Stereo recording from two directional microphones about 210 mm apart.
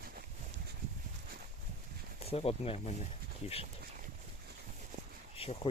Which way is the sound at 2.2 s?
30° left (ahead or behind).